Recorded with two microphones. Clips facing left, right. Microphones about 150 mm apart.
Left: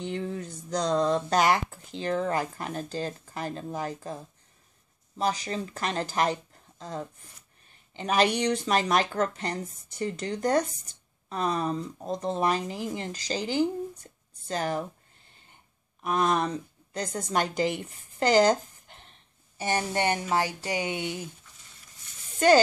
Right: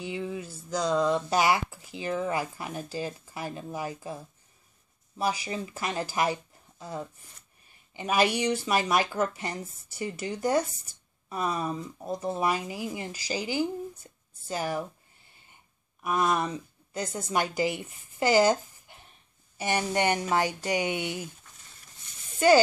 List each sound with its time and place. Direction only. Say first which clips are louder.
0.0 s speech: left 1 dB; 5° right (ahead or behind)
16.0 s a woman's voice: left 1 dB; 5° right (ahead or behind)
19.5 s a sound: even; 15° right (ahead or behind)
19.9 s speech: right 3 dB; 15° right (ahead or behind)